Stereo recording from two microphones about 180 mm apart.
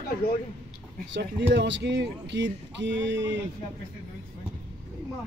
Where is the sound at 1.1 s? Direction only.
85° right.